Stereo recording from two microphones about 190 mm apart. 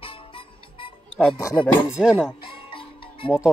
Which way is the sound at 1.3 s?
15° left (ahead or behind).